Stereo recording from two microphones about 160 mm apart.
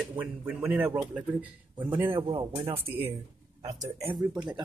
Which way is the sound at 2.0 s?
35° right (ahead or behind).